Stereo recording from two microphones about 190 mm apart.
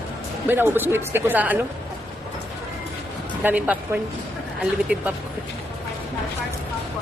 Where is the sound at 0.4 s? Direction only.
10° right (ahead or behind).